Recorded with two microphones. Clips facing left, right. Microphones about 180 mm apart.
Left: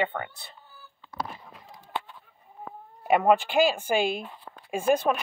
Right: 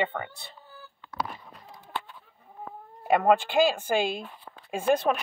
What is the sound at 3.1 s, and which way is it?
Speech, 10° left (ahead or behind).